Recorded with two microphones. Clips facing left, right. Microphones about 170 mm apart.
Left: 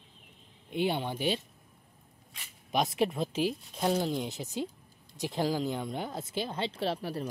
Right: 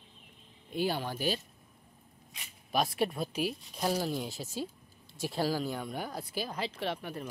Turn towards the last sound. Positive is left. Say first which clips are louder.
# left 4 dB
turn(degrees=35)  # may be behind; listen again after turning